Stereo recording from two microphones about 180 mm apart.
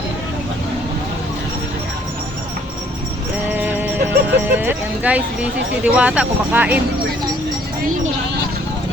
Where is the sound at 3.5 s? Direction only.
10° right (ahead or behind).